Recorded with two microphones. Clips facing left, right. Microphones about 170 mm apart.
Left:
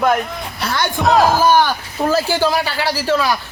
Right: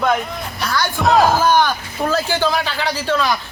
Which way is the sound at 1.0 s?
Centre (ahead or behind).